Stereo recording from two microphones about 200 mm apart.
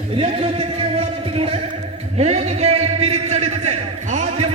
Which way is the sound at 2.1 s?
30° right (ahead or behind).